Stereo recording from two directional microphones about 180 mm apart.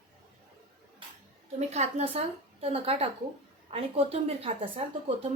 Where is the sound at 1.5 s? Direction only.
35° right (ahead or behind).